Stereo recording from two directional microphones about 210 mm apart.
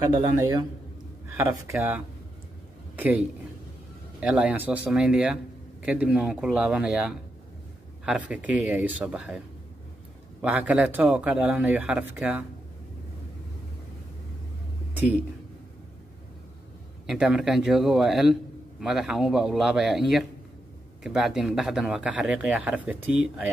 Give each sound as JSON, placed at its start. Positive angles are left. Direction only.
{"t": 0.1, "sound": "a man's voice", "side_deg": -20}
{"t": 8.3, "sound": "a man's voice", "side_deg": -5}
{"t": 10.4, "sound": "a man's voice", "side_deg": -5}
{"t": 17.0, "sound": "a man's voice", "side_deg": -5}